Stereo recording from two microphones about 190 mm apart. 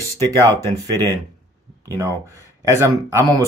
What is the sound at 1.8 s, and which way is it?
Speech, 20° right (ahead or behind).